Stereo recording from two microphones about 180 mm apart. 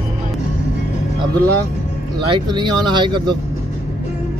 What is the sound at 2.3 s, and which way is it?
Speech, 25° right (ahead or behind).